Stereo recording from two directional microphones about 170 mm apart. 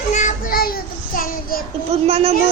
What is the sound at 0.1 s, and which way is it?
Child singing, 45° left (ahead or behind).